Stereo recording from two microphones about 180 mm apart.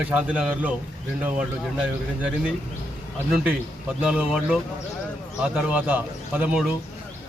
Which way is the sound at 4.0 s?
10° right (ahead or behind).